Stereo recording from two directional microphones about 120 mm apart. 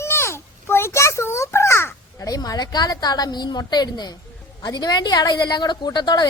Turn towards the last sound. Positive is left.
turn(degrees=35)  # may be behind; listen again after turning